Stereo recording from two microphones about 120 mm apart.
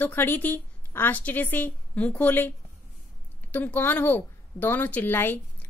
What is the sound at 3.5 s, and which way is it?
A woman's voice, 15° left (ahead or behind).